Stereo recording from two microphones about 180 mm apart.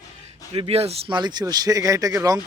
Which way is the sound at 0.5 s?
35° right (ahead or behind).